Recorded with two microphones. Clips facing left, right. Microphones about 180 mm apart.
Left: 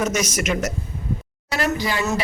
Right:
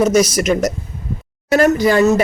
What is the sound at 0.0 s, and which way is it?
Speech, 35° right (ahead or behind).